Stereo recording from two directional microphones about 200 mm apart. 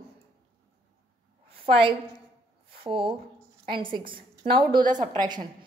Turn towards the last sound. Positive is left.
turn(degrees=-20)  # may be behind; listen again after turning